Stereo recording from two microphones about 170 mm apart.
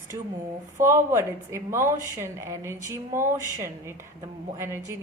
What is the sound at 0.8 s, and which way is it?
Speech, 15° right (ahead or behind).